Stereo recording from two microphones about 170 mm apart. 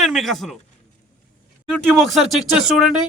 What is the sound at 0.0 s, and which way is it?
Speech, centre (ahead or behind).